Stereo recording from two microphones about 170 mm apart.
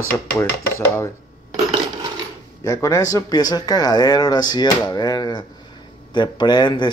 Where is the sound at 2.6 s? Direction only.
15° left (ahead or behind).